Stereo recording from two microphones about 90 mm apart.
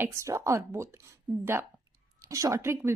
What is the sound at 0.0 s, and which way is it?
A woman's voice, 35° right (ahead or behind).